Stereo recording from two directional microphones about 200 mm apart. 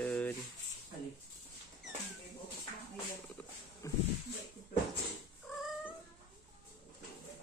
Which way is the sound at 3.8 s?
15° left (ahead or behind).